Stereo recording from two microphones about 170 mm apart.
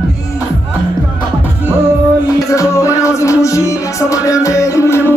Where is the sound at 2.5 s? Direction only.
20° left (ahead or behind).